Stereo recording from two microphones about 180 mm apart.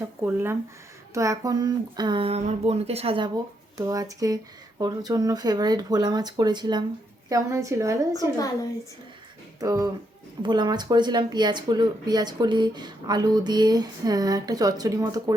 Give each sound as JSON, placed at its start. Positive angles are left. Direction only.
{"t": 0.2, "sound": "a woman's voice", "side_deg": -10}
{"t": 3.8, "sound": "a woman's voice", "side_deg": -20}
{"t": 9.6, "sound": "speech", "side_deg": -20}